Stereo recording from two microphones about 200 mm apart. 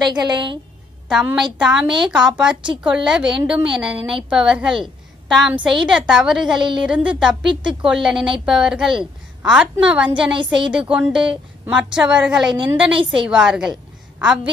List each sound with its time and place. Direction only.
0.0 s a woman's voice: 20° right (ahead or behind)
1.0 s a woman's voice: centre (ahead or behind)